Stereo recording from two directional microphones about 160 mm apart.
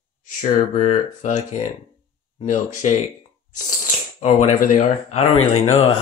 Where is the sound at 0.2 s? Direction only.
55° left (ahead or behind).